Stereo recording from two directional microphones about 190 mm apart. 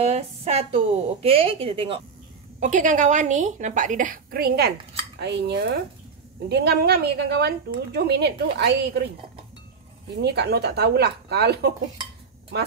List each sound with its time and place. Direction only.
0.0 s a woman's voice: 35° right (ahead or behind)
2.6 s a woman's voice: 40° right (ahead or behind); by 9.1 s 60° right (ahead or behind)
10.1 s a woman's voice: 60° right (ahead or behind)